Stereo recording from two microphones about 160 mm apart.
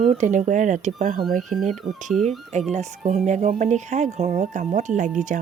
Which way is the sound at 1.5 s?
Centre (ahead or behind).